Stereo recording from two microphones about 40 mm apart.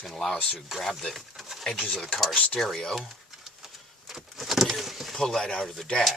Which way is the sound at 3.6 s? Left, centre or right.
Centre.